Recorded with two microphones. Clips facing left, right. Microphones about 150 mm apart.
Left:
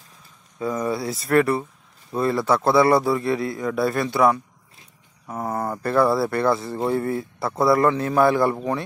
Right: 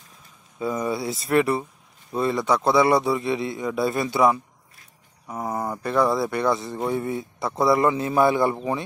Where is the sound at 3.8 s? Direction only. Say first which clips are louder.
Left 1 dB; centre (ahead or behind).